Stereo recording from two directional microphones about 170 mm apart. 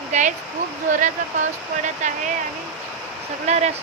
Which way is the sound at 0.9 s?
50° right (ahead or behind).